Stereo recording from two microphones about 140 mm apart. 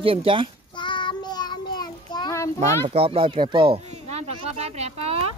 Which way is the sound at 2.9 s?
45° right (ahead or behind).